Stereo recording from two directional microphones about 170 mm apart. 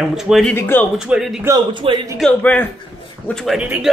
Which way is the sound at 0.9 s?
5° right (ahead or behind).